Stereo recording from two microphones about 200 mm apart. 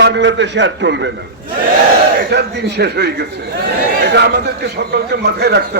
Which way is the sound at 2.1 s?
55° right (ahead or behind).